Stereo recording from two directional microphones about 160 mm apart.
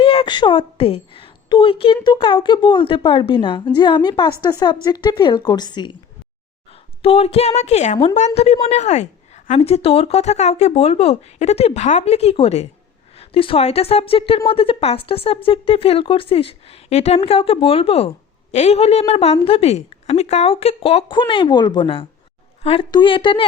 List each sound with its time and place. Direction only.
0.0 s a woman's voice: 35° left (ahead or behind)
6.7 s a woman's voice: 40° left (ahead or behind)